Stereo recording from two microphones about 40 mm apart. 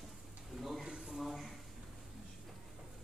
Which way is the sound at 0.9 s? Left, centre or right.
Centre.